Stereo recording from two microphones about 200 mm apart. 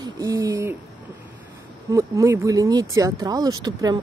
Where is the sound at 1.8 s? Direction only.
15° right (ahead or behind).